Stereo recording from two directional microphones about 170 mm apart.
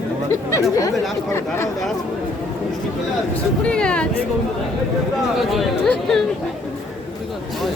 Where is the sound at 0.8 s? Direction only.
15° left (ahead or behind).